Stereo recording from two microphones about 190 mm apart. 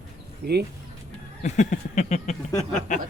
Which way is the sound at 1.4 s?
40° left (ahead or behind).